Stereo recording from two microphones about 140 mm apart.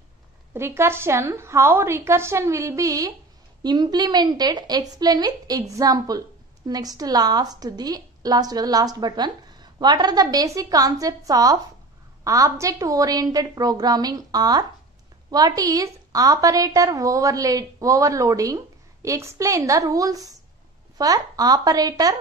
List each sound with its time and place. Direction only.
0.6 s a woman's voice: 20° right (ahead or behind)